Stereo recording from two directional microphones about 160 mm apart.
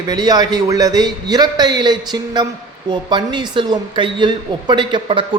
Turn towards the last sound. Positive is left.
turn(degrees=-30)  # may be behind; listen again after turning